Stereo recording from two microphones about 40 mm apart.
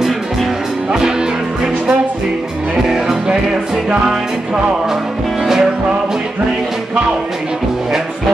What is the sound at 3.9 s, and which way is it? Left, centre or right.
Music, right.